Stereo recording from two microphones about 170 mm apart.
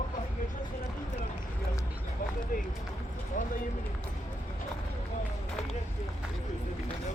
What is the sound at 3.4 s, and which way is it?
Run, 50° left (ahead or behind).